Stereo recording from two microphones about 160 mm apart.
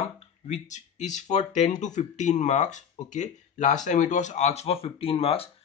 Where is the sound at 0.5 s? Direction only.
45° left (ahead or behind).